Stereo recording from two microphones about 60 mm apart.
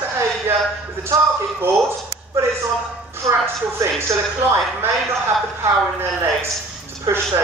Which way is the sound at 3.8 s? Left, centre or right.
Right.